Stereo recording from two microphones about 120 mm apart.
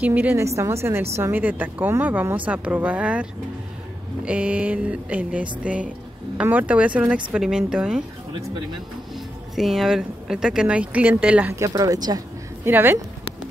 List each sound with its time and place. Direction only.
0.0 s speech: 15° right (ahead or behind)
9.1 s speech: centre (ahead or behind)
11.5 s speech: 30° right (ahead or behind)
12.6 s speech: 20° right (ahead or behind)